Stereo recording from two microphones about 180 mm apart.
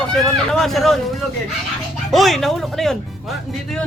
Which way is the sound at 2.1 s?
Centre (ahead or behind).